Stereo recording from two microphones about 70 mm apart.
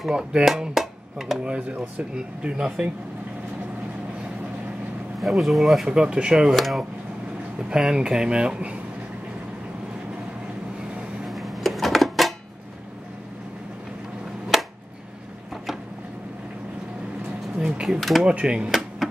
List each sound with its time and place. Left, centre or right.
0.1 s speech: centre
1.4 s speech: centre
5.2 s speech: centre
5.9 s speech: centre
6.5 s speech: centre
7.5 s speech: centre
11.2 s a sound: centre
14.5 s a sound: centre
17.6 s a sound: centre
17.8 s speech: centre
18.2 s speech: centre